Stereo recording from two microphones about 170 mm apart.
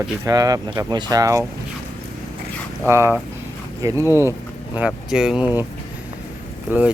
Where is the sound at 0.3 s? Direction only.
20° right (ahead or behind).